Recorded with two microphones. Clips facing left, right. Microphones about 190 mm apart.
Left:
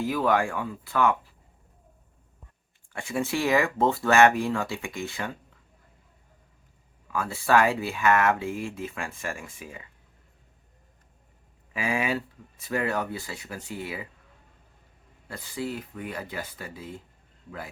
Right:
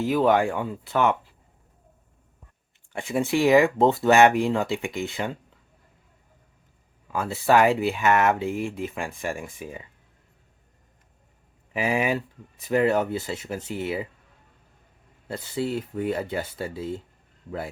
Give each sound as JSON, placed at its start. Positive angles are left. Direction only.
{"t": 0.0, "sound": "speech", "side_deg": -20}
{"t": 2.9, "sound": "speech", "side_deg": -20}
{"t": 7.1, "sound": "speech", "side_deg": -20}
{"t": 11.7, "sound": "speech", "side_deg": -20}
{"t": 15.3, "sound": "speech", "side_deg": -25}